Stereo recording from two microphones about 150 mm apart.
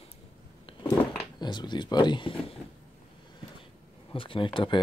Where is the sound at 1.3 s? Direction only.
30° left (ahead or behind).